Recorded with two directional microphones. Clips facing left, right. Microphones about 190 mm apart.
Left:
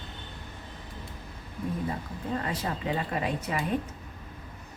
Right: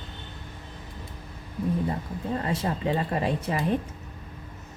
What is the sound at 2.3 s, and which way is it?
Speech, 25° right (ahead or behind).